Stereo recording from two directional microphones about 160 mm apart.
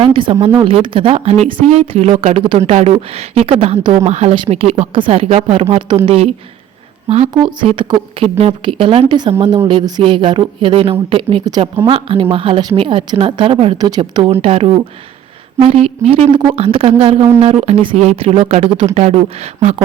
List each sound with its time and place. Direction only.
0.0 s speech: 30° right (ahead or behind)